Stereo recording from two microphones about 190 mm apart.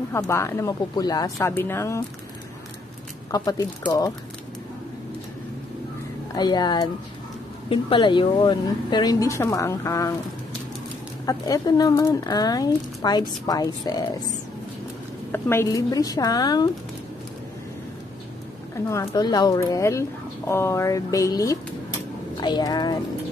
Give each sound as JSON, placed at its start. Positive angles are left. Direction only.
{"t": 0.1, "sound": "a woman's voice", "side_deg": 15}
{"t": 3.3, "sound": "speech", "side_deg": 20}
{"t": 6.3, "sound": "speech", "side_deg": 20}
{"t": 11.2, "sound": "speech", "side_deg": 20}
{"t": 15.3, "sound": "speech", "side_deg": 10}
{"t": 18.9, "sound": "a woman's voice", "side_deg": 20}